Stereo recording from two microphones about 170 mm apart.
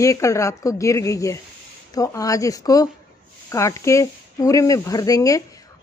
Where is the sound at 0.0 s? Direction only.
20° left (ahead or behind).